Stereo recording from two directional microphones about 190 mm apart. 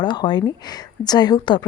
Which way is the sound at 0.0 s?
25° left (ahead or behind).